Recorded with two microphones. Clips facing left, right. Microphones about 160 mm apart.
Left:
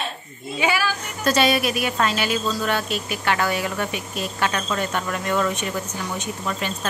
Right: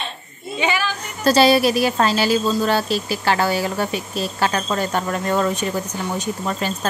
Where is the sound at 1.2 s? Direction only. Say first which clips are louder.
Right 5 dB; 30° right (ahead or behind).